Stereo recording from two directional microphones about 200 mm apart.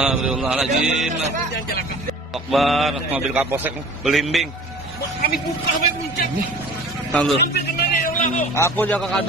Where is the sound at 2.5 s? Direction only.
Centre (ahead or behind).